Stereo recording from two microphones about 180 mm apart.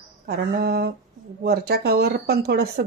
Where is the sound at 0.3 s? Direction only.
60° right (ahead or behind).